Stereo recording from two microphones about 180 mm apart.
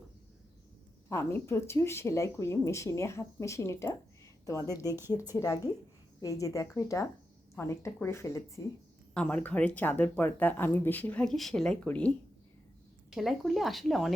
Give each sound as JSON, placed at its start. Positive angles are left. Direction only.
{"t": 1.1, "sound": "speech", "side_deg": 15}